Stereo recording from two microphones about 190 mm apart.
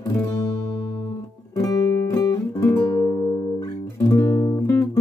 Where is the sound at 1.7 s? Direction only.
15° left (ahead or behind).